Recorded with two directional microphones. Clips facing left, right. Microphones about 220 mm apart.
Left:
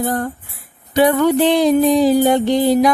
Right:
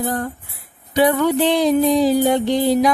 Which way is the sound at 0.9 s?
50° left (ahead or behind).